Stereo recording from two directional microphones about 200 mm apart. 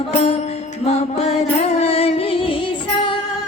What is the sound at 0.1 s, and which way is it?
Music, 30° left (ahead or behind).